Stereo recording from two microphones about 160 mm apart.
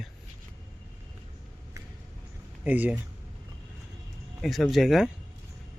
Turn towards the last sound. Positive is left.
turn(degrees=0)  # may be behind; listen again after turning